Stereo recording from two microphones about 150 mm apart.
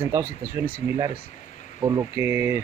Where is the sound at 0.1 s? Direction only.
15° right (ahead or behind).